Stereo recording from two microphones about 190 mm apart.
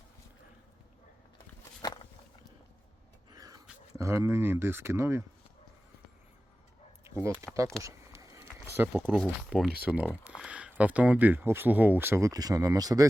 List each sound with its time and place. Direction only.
3.9 s speech: 15° right (ahead or behind)
7.0 s a sound: 15° right (ahead or behind)
8.9 s speech: centre (ahead or behind); by 13.1 s 20° right (ahead or behind)